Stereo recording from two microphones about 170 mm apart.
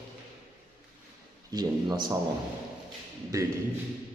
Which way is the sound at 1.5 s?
25° right (ahead or behind).